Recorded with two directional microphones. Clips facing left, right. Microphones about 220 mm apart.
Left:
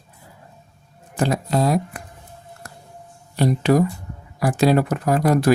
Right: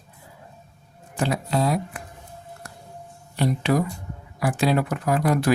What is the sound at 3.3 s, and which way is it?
Speech, 40° left (ahead or behind).